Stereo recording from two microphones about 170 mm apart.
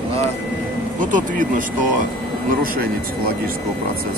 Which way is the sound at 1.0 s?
50° right (ahead or behind).